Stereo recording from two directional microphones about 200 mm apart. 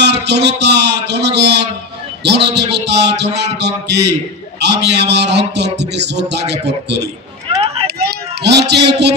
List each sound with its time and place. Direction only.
0.0 s a man's voice: 55° right (ahead or behind)
2.9 s music: 60° right (ahead or behind)
7.8 s a sound: 55° right (ahead or behind)